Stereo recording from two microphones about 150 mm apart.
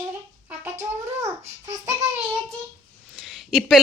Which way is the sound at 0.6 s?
15° right (ahead or behind).